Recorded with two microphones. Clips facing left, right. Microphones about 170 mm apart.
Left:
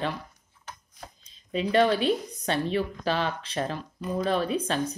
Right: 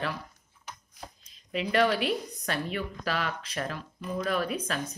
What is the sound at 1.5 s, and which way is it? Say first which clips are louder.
A woman's voice: left 3 dB; 25° left (ahead or behind).